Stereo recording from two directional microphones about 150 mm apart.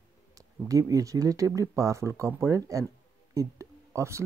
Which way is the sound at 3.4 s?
20° right (ahead or behind).